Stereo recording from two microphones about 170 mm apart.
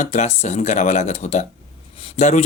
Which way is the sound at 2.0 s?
40° left (ahead or behind).